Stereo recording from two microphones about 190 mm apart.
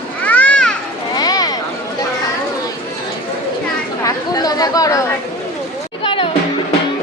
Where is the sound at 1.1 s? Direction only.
20° left (ahead or behind).